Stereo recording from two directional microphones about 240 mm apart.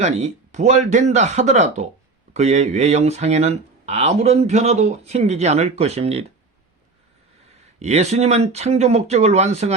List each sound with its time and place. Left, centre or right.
0.0 s speech: right
7.8 s speech: right